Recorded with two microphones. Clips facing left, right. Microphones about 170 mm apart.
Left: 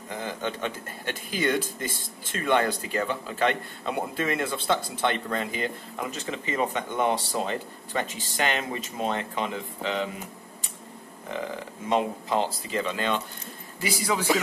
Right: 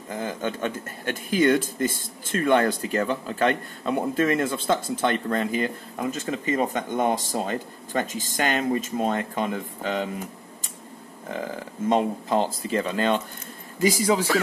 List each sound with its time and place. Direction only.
0.1 s speech: 45° right (ahead or behind)
11.8 s speech: 45° right (ahead or behind)